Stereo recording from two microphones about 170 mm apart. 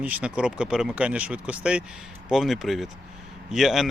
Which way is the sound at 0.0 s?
5° right (ahead or behind).